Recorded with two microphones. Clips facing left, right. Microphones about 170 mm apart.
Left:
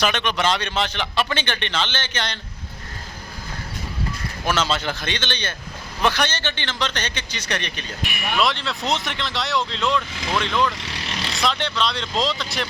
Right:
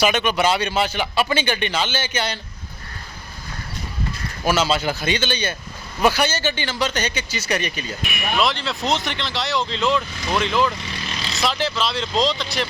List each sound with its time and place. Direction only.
0.0 s speech: 10° right (ahead or behind)
4.4 s speech: 5° right (ahead or behind)
10.8 s vehicle: 70° left (ahead or behind)
11.3 s speech: 5° right (ahead or behind)